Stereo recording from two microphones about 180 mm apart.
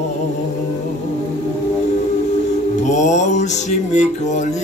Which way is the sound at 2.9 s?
40° left (ahead or behind).